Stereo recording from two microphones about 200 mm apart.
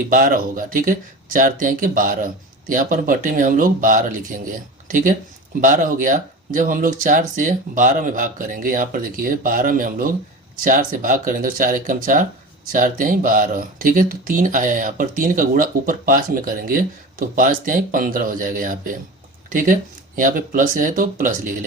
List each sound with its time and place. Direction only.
0.1 s speech: 45° right (ahead or behind)